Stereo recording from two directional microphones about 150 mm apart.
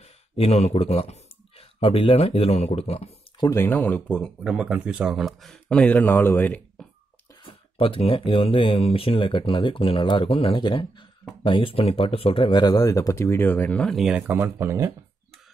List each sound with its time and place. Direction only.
0.0 s speech: 45° left (ahead or behind)
3.3 s speech: 20° left (ahead or behind)
7.4 s speech: 35° left (ahead or behind); by 14.9 s 15° right (ahead or behind)